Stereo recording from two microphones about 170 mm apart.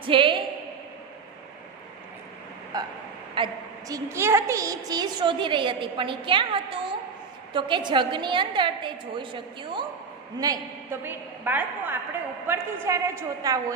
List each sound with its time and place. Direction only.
0.0 s a woman's voice: 30° right (ahead or behind)
2.7 s a woman's voice: 25° right (ahead or behind)
3.9 s a woman's voice: 15° right (ahead or behind)
10.4 s a woman's voice: 15° right (ahead or behind)